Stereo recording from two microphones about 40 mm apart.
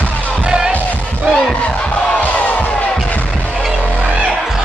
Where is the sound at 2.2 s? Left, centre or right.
Left.